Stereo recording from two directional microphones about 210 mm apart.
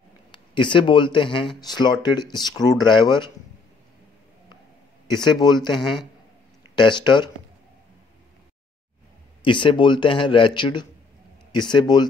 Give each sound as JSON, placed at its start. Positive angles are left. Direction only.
{"t": 0.3, "sound": "speech", "side_deg": 25}
{"t": 5.2, "sound": "speech", "side_deg": 20}
{"t": 6.8, "sound": "speech", "side_deg": 20}
{"t": 9.4, "sound": "speech", "side_deg": 25}